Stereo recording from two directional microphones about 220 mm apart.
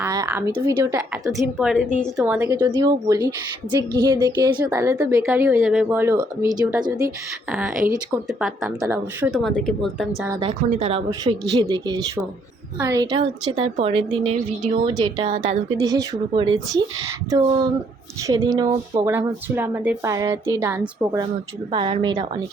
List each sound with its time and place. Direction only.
0.0 s a woman's voice: 15° right (ahead or behind)
8.3 s speech: centre (ahead or behind)
10.7 s a woman's voice: 25° right (ahead or behind); by 21.2 s 10° right (ahead or behind)
21.7 s a woman's voice: 20° right (ahead or behind)